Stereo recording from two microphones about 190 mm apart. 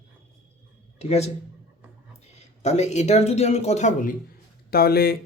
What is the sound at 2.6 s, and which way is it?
Speech, 35° left (ahead or behind).